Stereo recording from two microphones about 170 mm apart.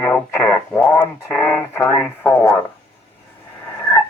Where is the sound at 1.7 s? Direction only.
10° left (ahead or behind).